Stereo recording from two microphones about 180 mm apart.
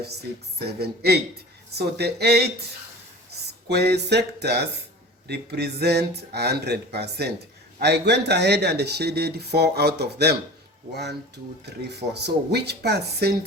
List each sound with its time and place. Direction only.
0.8 s speech: 60° right (ahead or behind)
3.7 s speech: 65° right (ahead or behind)
11.6 s speech: 65° right (ahead or behind)